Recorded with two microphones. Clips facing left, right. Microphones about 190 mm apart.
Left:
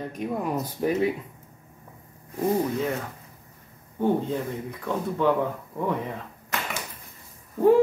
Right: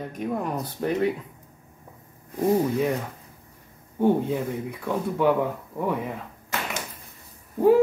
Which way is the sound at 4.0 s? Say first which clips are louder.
Right 3 dB; 15° right (ahead or behind).